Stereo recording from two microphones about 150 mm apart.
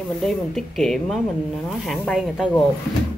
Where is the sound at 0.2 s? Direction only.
Centre (ahead or behind).